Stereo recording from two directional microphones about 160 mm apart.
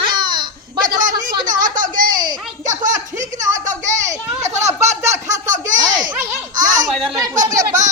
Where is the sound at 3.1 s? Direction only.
50° right (ahead or behind).